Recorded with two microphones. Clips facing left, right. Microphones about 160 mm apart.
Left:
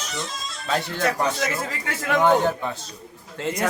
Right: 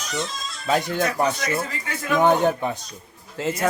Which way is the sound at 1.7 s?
85° left.